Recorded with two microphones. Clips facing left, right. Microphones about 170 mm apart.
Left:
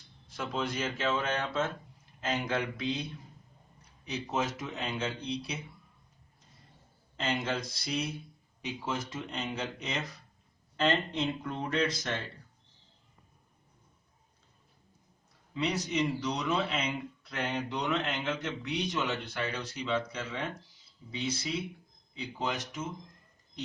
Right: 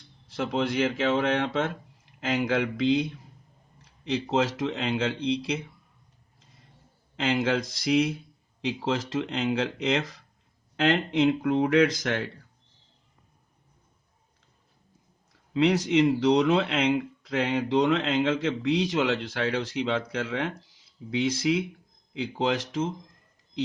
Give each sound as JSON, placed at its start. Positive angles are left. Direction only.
{"t": 0.3, "sound": "a man's voice", "side_deg": -80}
{"t": 7.2, "sound": "a man's voice", "side_deg": -90}
{"t": 15.5, "sound": "a man's voice", "side_deg": -90}